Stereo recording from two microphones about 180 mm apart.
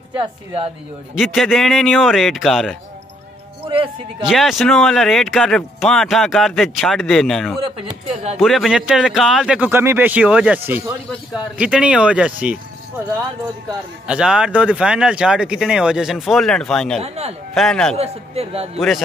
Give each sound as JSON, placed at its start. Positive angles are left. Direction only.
{"t": 1.1, "sound": "speech", "side_deg": 0}
{"t": 3.7, "sound": "speech", "side_deg": -30}
{"t": 4.3, "sound": "speech", "side_deg": 0}
{"t": 8.1, "sound": "a man's voice", "side_deg": -35}
{"t": 8.4, "sound": "speech", "side_deg": 0}
{"t": 14.0, "sound": "speech", "side_deg": -5}
{"t": 17.0, "sound": "a man's voice", "side_deg": -35}
{"t": 17.6, "sound": "speech", "side_deg": 5}
{"t": 17.9, "sound": "a man's voice", "side_deg": -35}